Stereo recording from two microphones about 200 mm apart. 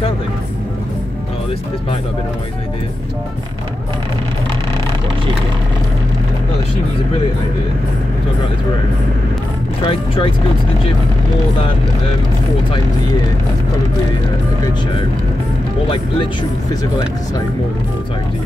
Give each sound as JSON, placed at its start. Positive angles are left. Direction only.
{"t": 9.8, "sound": "speech", "side_deg": 25}